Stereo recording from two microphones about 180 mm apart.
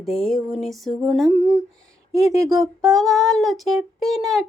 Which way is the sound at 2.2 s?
15° right (ahead or behind).